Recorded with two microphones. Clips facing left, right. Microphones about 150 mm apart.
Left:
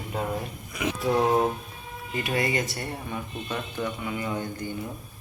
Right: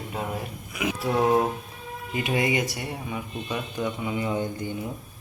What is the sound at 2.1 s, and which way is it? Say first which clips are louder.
Speech: right 2 dB; 20° right (ahead or behind).